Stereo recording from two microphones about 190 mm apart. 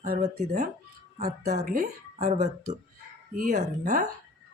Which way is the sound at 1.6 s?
50° right (ahead or behind).